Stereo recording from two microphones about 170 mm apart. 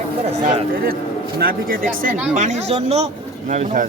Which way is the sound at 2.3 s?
45° right (ahead or behind).